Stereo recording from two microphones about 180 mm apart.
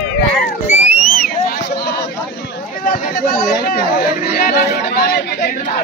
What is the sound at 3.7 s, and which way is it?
Chatter, 55° left (ahead or behind).